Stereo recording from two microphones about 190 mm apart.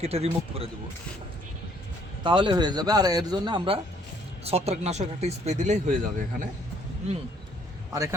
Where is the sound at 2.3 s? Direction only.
25° right (ahead or behind); by 6.0 s 40° right (ahead or behind).